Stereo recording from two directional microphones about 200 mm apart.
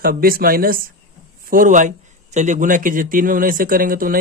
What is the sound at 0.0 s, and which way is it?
A man's voice, 45° right (ahead or behind).